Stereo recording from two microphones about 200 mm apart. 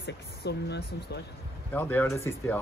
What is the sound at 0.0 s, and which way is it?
Speech, 55° left (ahead or behind).